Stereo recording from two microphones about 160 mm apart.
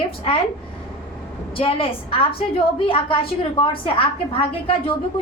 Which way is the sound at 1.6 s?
35° left (ahead or behind).